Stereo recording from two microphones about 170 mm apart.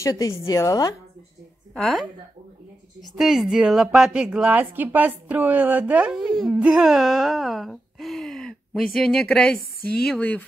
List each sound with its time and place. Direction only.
0.0 s a woman's voice: 20° left (ahead or behind)
1.7 s a woman's voice: centre (ahead or behind)
3.2 s a woman's voice: 5° right (ahead or behind)